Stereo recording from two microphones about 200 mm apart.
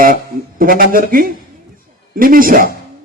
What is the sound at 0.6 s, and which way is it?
Speech, 45° right (ahead or behind).